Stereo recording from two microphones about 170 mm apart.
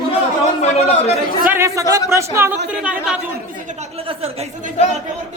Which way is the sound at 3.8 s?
35° right (ahead or behind).